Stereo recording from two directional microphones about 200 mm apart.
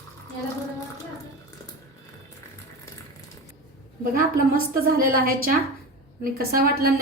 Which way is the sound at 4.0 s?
45° right (ahead or behind).